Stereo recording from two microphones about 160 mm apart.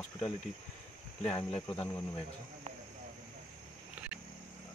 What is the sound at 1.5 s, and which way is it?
Speech, 35° left (ahead or behind).